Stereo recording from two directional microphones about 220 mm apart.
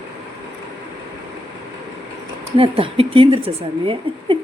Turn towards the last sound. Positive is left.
turn(degrees=-25)  # may be behind; listen again after turning